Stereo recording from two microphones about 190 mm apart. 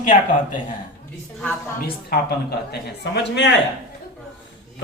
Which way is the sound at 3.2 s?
65° left (ahead or behind).